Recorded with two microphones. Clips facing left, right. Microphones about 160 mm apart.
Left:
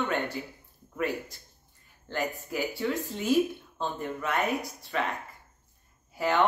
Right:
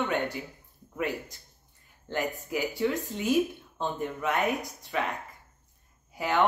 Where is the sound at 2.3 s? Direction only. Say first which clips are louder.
Right 1 dB; 20° right (ahead or behind).